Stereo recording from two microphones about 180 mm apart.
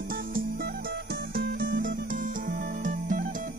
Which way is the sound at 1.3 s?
55° right (ahead or behind).